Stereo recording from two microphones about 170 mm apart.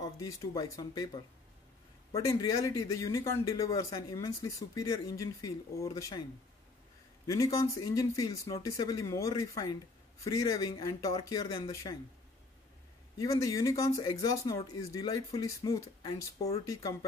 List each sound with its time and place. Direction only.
0.0 s speech: 20° left (ahead or behind)
7.2 s speech: 20° left (ahead or behind)
13.2 s speech: 20° left (ahead or behind)